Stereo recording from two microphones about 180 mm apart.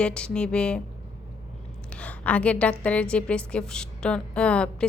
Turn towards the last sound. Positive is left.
turn(degrees=5)  # may be behind; listen again after turning